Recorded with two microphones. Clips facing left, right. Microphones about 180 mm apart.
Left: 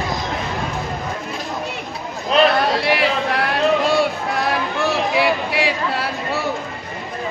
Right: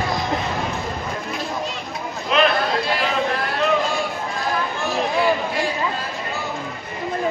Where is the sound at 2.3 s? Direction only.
35° left (ahead or behind).